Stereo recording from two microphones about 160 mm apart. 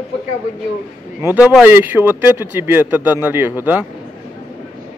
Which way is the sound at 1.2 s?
10° right (ahead or behind).